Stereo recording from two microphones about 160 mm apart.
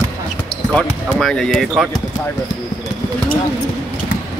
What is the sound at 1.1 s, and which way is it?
Speech, 5° left (ahead or behind).